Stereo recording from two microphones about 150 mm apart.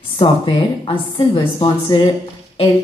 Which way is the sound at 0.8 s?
35° left (ahead or behind).